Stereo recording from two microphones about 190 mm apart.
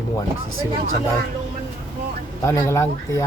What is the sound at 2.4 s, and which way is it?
Speech, 15° left (ahead or behind).